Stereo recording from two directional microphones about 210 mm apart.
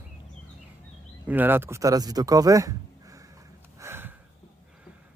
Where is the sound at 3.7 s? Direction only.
10° right (ahead or behind).